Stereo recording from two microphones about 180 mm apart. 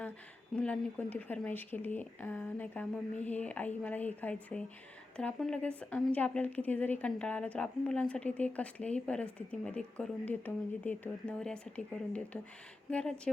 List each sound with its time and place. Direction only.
0.5 s a woman's voice: 5° left (ahead or behind)